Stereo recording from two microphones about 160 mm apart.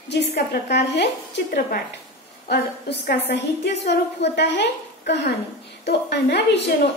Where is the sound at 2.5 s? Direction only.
90° left.